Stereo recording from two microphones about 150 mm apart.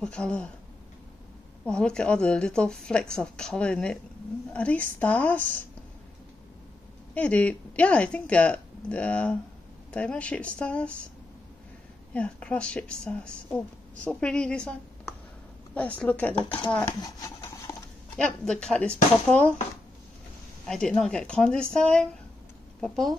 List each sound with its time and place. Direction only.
0.0 s speech: 5° left (ahead or behind)
1.6 s speech: 5° left (ahead or behind)
7.2 s speech: 10° left (ahead or behind)
12.1 s a woman's voice: 10° left (ahead or behind)
16.4 s speech: 35° left (ahead or behind)
17.0 s speech: 20° left (ahead or behind)
18.1 s speech: 5° left (ahead or behind)
20.6 s speech: 5° left (ahead or behind)